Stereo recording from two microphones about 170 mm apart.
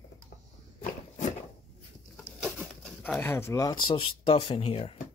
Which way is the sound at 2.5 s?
10° left (ahead or behind).